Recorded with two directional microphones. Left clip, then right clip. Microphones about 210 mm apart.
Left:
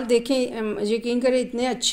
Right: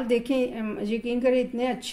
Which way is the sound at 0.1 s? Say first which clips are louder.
Left 4 dB; 35° left (ahead or behind).